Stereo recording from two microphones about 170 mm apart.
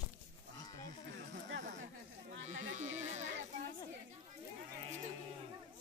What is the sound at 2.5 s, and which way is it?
Sheep, 45° right (ahead or behind).